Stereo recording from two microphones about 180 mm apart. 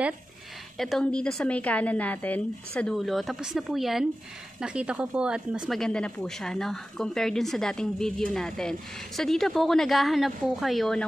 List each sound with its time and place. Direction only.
0.7 s speech: centre (ahead or behind)